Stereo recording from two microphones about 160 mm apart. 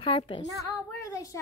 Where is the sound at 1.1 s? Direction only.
20° left (ahead or behind).